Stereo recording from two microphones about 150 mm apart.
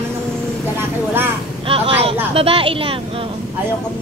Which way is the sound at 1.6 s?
40° right (ahead or behind).